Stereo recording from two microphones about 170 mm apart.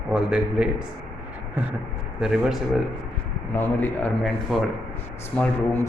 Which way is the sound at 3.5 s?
10° left (ahead or behind).